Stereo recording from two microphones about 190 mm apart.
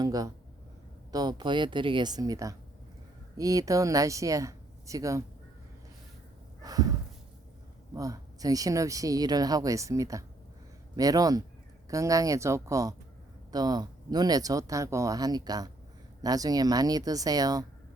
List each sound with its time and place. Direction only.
0.0 s speech: 20° right (ahead or behind)
6.6 s snort: 20° right (ahead or behind)
7.9 s speech: 20° right (ahead or behind)